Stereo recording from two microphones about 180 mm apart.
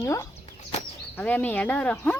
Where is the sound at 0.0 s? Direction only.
15° left (ahead or behind).